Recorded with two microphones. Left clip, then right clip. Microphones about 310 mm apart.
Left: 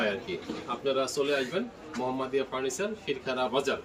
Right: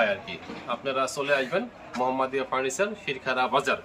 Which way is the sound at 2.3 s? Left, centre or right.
Centre.